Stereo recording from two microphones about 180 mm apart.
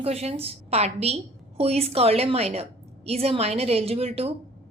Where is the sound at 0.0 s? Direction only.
35° right (ahead or behind).